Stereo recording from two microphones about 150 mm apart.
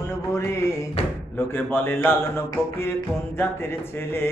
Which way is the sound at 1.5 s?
15° left (ahead or behind).